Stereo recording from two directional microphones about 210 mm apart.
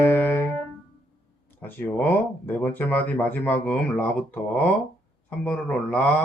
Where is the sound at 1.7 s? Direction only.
10° left (ahead or behind).